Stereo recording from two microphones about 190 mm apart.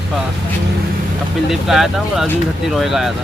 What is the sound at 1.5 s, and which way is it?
Speech, centre (ahead or behind).